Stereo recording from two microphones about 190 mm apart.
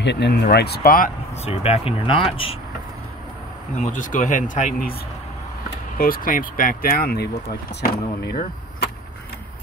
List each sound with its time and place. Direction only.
0.0 s speech: 65° left (ahead or behind)
1.4 s speech: 30° left (ahead or behind)
3.7 s speech: 40° left (ahead or behind)
5.9 s speech: 50° left (ahead or behind)